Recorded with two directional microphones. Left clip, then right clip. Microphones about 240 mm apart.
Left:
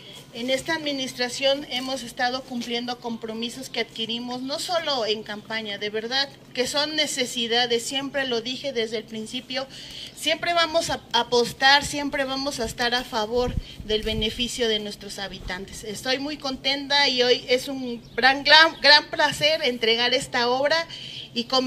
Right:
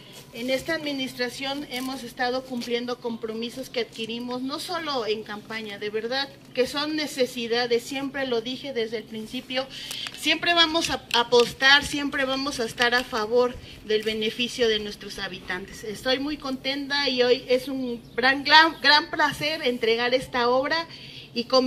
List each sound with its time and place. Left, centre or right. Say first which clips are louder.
0.4 s a woman's voice: left 1 dB; left